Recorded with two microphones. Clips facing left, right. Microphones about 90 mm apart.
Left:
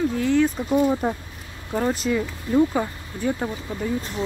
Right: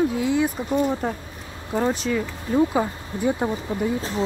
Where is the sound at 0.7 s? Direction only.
5° left (ahead or behind).